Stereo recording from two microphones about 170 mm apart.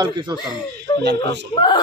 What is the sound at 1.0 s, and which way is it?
Speech, 80° right.